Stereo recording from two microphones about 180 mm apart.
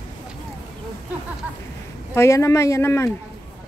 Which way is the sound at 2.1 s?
15° left (ahead or behind).